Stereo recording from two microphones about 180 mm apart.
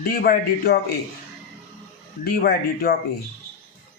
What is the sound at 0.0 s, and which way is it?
Speech, 55° left (ahead or behind).